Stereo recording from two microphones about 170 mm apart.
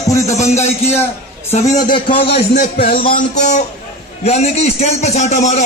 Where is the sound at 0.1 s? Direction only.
20° left (ahead or behind).